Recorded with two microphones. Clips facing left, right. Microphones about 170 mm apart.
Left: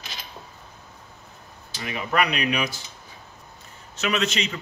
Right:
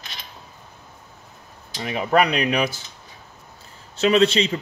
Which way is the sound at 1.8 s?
35° right (ahead or behind).